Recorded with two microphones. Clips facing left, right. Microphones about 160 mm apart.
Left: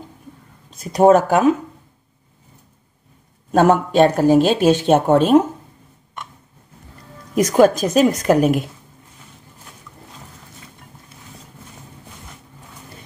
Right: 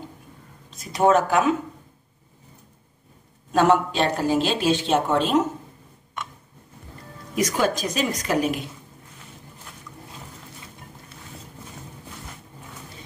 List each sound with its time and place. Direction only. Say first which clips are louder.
0.9 s speech: left 6 dB; 40° left (ahead or behind)
3.5 s speech: left 5 dB; 45° left (ahead or behind)
7.3 s speech: left 9 dB; 50° left (ahead or behind)